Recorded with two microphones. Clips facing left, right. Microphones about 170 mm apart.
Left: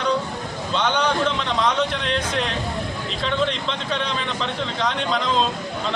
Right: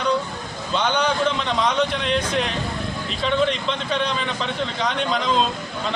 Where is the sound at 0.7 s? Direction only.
Centre (ahead or behind).